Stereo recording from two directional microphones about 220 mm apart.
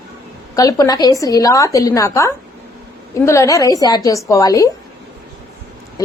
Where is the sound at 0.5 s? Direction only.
15° left (ahead or behind).